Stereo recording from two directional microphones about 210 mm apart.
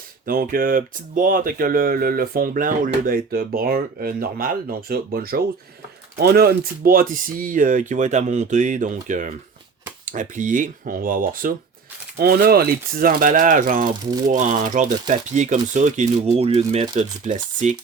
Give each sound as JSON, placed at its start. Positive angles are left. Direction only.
{"t": 0.3, "sound": "speech", "side_deg": -45}